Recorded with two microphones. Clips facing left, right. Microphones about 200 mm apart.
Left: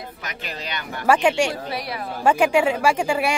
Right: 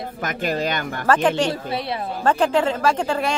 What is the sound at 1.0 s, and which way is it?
Speech, 10° left (ahead or behind).